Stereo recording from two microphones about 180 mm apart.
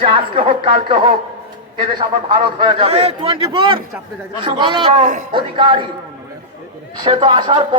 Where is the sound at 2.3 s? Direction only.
25° right (ahead or behind).